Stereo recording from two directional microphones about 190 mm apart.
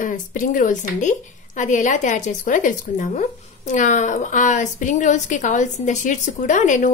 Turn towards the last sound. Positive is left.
turn(degrees=40)  # may be behind; listen again after turning